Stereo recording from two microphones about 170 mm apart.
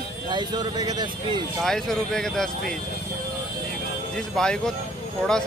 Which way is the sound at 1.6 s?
Centre (ahead or behind).